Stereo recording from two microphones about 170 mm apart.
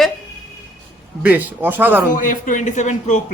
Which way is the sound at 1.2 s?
10° right (ahead or behind).